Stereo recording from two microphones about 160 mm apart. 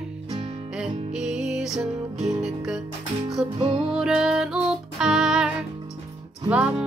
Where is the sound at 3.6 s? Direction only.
35° right (ahead or behind).